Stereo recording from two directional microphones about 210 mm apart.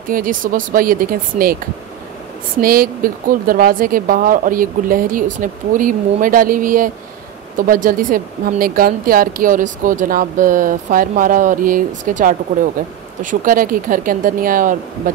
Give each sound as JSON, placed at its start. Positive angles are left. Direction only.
{"t": 0.1, "sound": "speech", "side_deg": -40}
{"t": 2.6, "sound": "speech", "side_deg": -45}